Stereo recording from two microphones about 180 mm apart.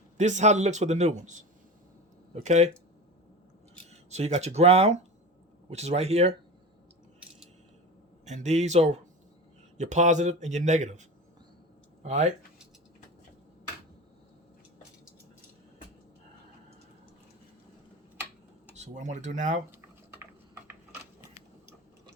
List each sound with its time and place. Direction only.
0.2 s speech: 40° right (ahead or behind)
4.1 s speech: 35° right (ahead or behind)
8.2 s speech: 40° right (ahead or behind)
12.0 s speech: 40° right (ahead or behind)
18.7 s speech: 40° right (ahead or behind)